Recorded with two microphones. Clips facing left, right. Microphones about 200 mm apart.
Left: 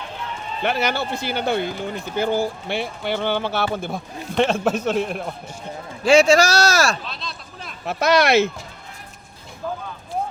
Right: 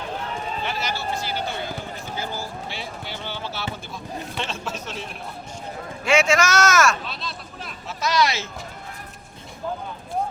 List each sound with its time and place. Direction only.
0.6 s speech: 60° left (ahead or behind)
6.1 s a man's voice: 35° left (ahead or behind)
7.1 s a sound: centre (ahead or behind)
7.9 s speech: 60° left (ahead or behind)